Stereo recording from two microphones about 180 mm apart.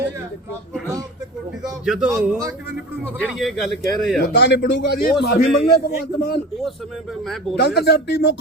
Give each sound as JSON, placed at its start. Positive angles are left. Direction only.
{"t": 1.8, "sound": "speech", "side_deg": 0}
{"t": 2.0, "sound": "a man's voice", "side_deg": -15}
{"t": 3.0, "sound": "speech", "side_deg": 5}
{"t": 4.2, "sound": "a man's voice", "side_deg": 65}
{"t": 7.5, "sound": "speech", "side_deg": 65}